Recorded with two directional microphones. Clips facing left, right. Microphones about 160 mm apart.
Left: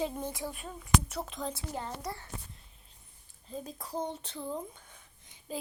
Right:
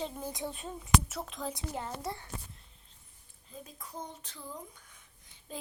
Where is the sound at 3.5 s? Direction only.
35° left (ahead or behind).